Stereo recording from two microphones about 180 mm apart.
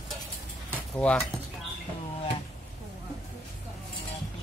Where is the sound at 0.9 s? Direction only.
5° left (ahead or behind).